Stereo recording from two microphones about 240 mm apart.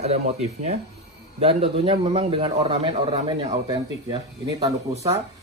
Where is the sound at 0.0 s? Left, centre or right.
Right.